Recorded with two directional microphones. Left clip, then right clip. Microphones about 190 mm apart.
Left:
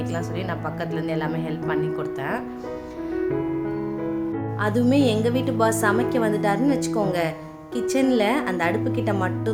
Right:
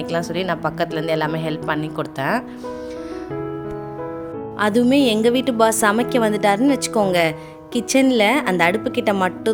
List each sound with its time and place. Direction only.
0.1 s a woman's voice: 50° right (ahead or behind)
4.6 s a woman's voice: 50° right (ahead or behind)